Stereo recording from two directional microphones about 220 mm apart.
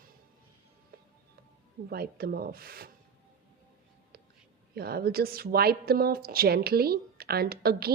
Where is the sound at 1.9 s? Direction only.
45° right (ahead or behind).